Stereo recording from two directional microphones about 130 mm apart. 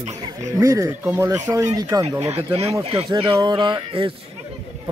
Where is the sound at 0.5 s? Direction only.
25° right (ahead or behind).